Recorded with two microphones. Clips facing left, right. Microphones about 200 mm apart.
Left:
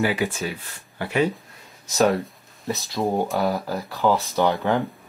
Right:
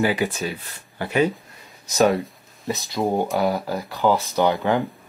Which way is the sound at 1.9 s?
Centre (ahead or behind).